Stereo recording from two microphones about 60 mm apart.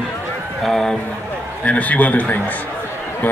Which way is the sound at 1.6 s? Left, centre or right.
Left.